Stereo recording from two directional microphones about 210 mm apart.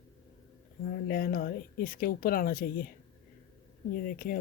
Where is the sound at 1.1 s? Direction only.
45° left (ahead or behind).